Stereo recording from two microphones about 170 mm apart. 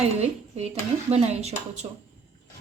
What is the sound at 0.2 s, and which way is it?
Speech, 40° right (ahead or behind).